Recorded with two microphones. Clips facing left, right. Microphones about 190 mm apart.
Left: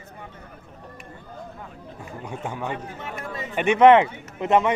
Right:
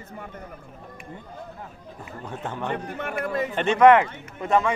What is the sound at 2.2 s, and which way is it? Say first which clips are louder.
Speech: even; 10° left (ahead or behind).